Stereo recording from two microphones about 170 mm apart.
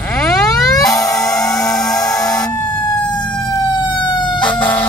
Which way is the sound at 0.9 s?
20° left (ahead or behind).